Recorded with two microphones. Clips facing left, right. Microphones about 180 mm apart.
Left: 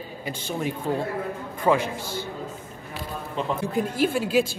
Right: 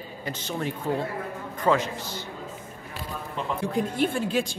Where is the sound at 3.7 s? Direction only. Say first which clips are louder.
Even; 5° left (ahead or behind).